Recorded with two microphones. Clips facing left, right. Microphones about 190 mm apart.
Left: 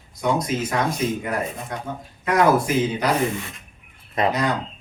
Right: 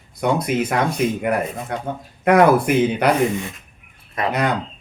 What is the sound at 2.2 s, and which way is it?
Speech, 60° right (ahead or behind).